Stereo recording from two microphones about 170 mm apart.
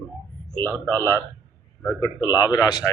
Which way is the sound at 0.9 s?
15° left (ahead or behind).